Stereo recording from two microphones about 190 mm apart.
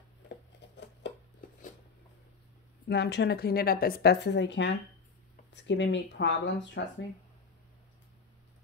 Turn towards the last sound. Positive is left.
turn(degrees=70)  # may be behind; listen again after turning